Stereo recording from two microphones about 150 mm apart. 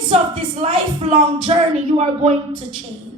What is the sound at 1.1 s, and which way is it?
Speech, 35° right (ahead or behind).